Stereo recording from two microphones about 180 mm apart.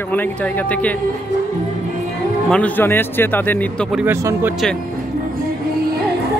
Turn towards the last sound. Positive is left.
turn(degrees=-10)  # may be behind; listen again after turning